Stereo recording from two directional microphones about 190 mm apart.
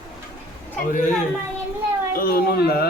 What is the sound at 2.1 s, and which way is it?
Speech, 50° left (ahead or behind).